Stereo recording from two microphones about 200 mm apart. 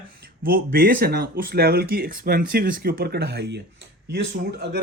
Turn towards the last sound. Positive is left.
turn(degrees=-55)  # may be behind; listen again after turning